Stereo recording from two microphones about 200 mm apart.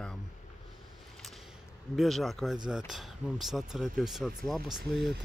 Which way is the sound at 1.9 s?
Centre (ahead or behind).